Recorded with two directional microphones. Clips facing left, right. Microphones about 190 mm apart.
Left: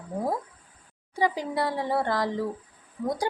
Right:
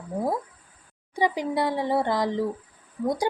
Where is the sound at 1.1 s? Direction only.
15° right (ahead or behind).